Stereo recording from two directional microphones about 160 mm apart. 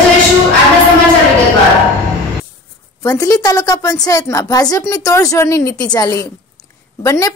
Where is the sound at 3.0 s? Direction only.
20° left (ahead or behind).